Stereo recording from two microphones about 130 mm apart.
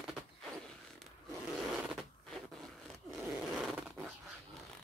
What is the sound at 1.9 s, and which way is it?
Zipper, centre (ahead or behind).